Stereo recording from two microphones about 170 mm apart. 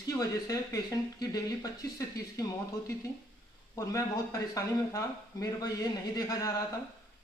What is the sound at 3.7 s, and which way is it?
Speech, 20° left (ahead or behind).